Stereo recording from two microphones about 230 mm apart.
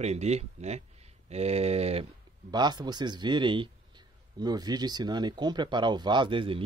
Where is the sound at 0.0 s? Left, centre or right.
Right.